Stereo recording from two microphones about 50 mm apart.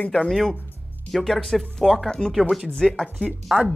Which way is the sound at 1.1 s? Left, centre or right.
Centre.